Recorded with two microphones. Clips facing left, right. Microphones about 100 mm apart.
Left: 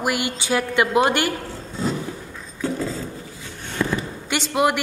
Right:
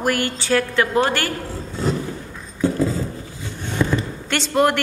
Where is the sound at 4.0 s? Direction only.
10° left (ahead or behind).